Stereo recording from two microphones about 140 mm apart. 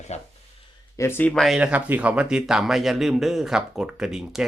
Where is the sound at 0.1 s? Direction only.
50° left (ahead or behind).